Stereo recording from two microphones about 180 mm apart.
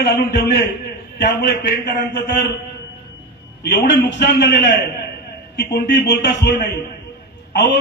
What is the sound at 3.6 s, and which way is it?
A man's voice, 70° left (ahead or behind).